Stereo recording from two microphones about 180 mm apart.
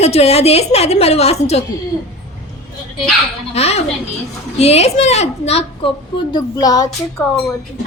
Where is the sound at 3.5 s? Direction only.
35° left (ahead or behind).